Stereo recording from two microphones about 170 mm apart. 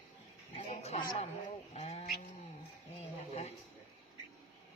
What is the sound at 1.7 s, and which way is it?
Goat, 40° left (ahead or behind).